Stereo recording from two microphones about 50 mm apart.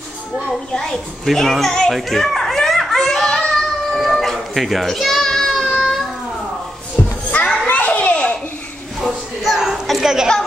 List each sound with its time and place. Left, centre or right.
0.5 s a woman's voice: centre
2.1 s children playing: centre
3.9 s a sound: centre
5.6 s child singing: centre
7.2 s children playing: left
7.6 s children playing: left
9.0 s a sound: centre